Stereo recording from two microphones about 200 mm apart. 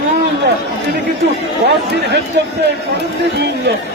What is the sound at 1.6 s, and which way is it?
Speech, 55° right (ahead or behind).